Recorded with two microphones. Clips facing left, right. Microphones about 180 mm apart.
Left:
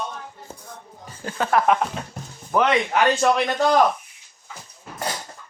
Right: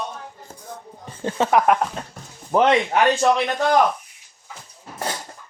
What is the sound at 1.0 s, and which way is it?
Speech, 30° right (ahead or behind).